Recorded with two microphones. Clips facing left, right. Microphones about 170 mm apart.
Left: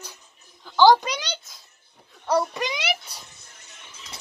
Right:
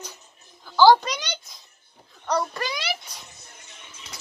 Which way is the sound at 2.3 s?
5° left (ahead or behind).